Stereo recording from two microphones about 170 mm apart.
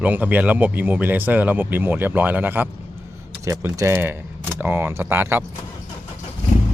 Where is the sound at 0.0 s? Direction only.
10° right (ahead or behind).